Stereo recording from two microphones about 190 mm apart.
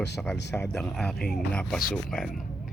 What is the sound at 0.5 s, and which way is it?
Speech, 5° left (ahead or behind).